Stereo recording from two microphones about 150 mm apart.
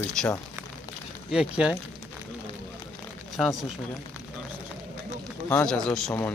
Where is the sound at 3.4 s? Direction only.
Centre (ahead or behind).